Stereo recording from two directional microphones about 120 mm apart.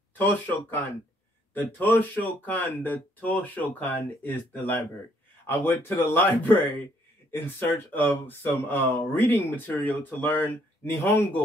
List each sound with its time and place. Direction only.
0.2 s speech: 15° left (ahead or behind)